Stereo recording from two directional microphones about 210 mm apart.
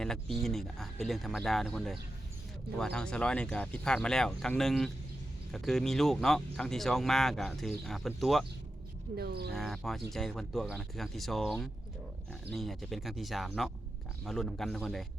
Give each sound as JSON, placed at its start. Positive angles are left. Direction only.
{"t": 0.0, "sound": "speech", "side_deg": 0}
{"t": 9.1, "sound": "speech", "side_deg": -50}
{"t": 9.5, "sound": "speech", "side_deg": 0}